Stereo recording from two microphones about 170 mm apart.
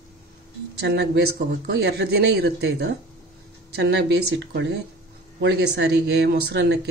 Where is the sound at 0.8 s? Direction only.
75° right (ahead or behind).